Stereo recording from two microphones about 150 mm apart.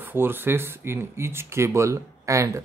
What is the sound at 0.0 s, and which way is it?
Speech, 15° right (ahead or behind).